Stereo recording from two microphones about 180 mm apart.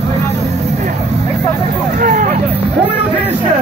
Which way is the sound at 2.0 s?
50° right (ahead or behind).